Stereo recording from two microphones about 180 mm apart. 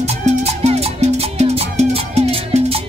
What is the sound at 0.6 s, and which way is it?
Music, 35° right (ahead or behind).